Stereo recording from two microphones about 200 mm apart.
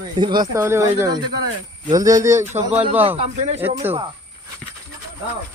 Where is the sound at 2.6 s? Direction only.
30° right (ahead or behind).